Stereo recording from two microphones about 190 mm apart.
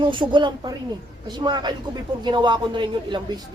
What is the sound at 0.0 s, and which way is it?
A man's voice, 25° right (ahead or behind).